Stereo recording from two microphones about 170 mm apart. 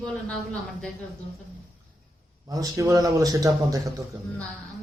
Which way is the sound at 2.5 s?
20° right (ahead or behind).